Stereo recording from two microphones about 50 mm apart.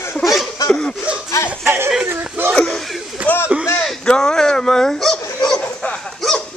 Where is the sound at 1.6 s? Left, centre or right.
Right.